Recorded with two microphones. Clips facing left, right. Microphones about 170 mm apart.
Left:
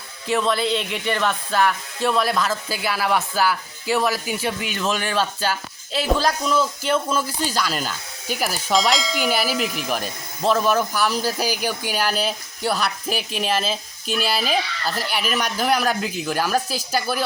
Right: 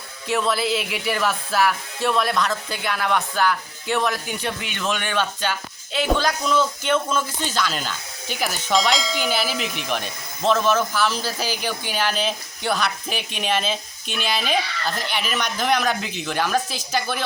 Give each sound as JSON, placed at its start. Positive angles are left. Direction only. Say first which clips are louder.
{"t": 0.3, "sound": "speech", "louder": "left 1 dB", "side_deg": 0}
{"t": 5.0, "sound": "speech", "louder": "even", "side_deg": 35}
{"t": 6.4, "sound": "speech", "louder": "even", "side_deg": 5}